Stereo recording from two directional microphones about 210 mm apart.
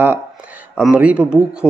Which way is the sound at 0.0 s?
10° right (ahead or behind).